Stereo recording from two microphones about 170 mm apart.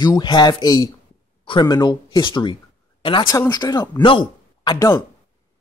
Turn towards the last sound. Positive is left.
turn(degrees=20)  # may be behind; listen again after turning